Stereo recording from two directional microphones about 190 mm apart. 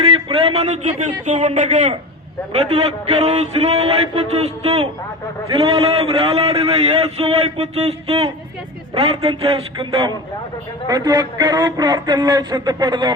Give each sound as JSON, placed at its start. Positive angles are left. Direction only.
{"t": 0.0, "sound": "a man's voice", "side_deg": -30}